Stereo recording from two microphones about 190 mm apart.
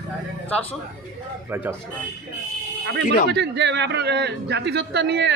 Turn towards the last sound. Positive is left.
turn(degrees=-60)  # may be behind; listen again after turning